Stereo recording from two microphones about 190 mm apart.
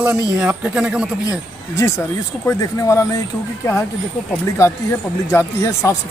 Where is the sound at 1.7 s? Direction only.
15° left (ahead or behind).